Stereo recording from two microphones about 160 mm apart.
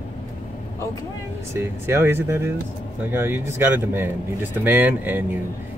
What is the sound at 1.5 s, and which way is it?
Speech, 15° right (ahead or behind).